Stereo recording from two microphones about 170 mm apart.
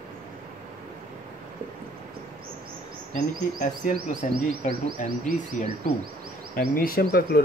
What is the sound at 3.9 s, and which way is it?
Speech, 60° right (ahead or behind).